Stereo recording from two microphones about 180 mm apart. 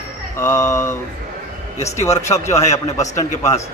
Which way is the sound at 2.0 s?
15° left (ahead or behind).